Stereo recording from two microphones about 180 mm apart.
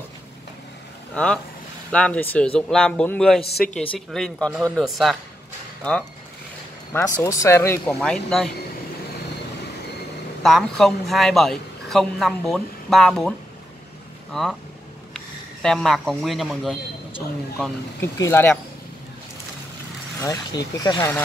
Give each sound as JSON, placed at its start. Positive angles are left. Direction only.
{"t": 1.1, "sound": "a woman's voice", "side_deg": 5}
{"t": 6.9, "sound": "speech", "side_deg": 15}
{"t": 7.9, "sound": "a woman's voice", "side_deg": 0}
{"t": 10.4, "sound": "a woman's voice", "side_deg": 0}
{"t": 14.3, "sound": "a woman's voice", "side_deg": 0}
{"t": 18.0, "sound": "speech", "side_deg": 15}
{"t": 20.2, "sound": "speech", "side_deg": 20}